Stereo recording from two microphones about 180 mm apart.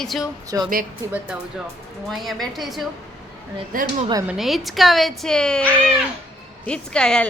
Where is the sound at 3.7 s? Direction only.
50° right (ahead or behind).